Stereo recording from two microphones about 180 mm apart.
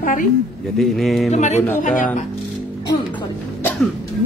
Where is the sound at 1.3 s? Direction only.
40° left (ahead or behind).